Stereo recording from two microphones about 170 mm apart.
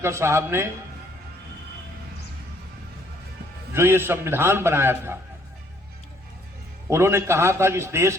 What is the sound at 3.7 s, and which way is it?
A man's voice, 15° right (ahead or behind).